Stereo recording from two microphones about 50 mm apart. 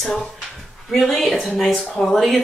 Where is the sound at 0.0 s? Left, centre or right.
Centre.